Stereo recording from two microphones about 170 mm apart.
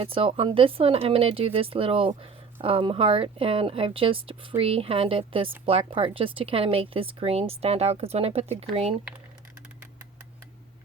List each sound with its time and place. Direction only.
0.0 s speech: 35° right (ahead or behind)